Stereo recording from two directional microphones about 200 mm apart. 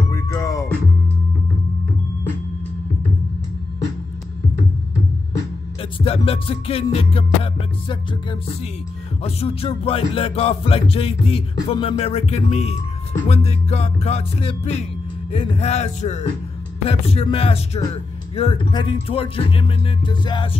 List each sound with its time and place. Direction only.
0.1 s music: 15° left (ahead or behind)
5.8 s speech: 30° left (ahead or behind)
13.3 s music: 30° left (ahead or behind)
16.8 s speech: 30° left (ahead or behind)